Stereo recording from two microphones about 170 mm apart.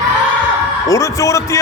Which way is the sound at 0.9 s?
15° left (ahead or behind).